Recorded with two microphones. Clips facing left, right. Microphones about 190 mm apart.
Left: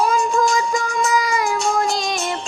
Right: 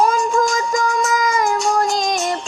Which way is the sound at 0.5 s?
45° right (ahead or behind).